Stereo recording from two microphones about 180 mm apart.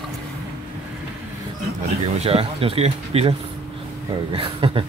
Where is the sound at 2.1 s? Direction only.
30° right (ahead or behind).